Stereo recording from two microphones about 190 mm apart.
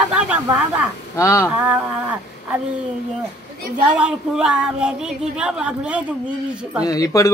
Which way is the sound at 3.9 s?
5° right (ahead or behind).